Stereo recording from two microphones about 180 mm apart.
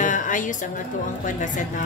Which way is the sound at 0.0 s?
45° left (ahead or behind).